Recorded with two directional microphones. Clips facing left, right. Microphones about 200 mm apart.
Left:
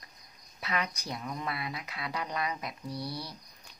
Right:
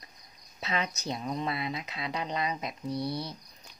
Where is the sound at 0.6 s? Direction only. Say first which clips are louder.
Right 2 dB; 25° right (ahead or behind).